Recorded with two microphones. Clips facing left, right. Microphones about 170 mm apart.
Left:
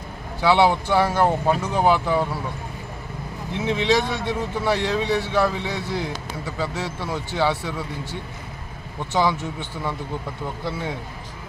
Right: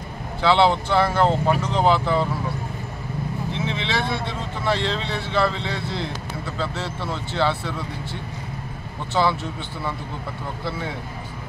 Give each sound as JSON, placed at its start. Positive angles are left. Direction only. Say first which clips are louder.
{"t": 0.4, "sound": "speech", "louder": "even", "side_deg": 10}
{"t": 3.5, "sound": "speech", "louder": "left 8 dB", "side_deg": 15}